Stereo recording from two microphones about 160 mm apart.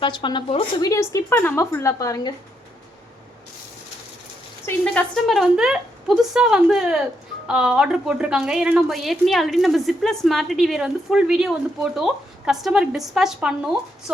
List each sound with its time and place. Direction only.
0.0 s speech: 30° left (ahead or behind)
4.7 s speech: 15° left (ahead or behind)
5.3 s a woman's voice: centre (ahead or behind)